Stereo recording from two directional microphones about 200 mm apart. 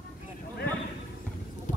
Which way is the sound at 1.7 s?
40° left (ahead or behind).